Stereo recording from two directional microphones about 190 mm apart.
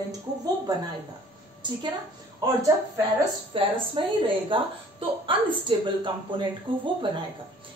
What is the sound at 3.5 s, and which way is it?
A woman's voice, 25° right (ahead or behind).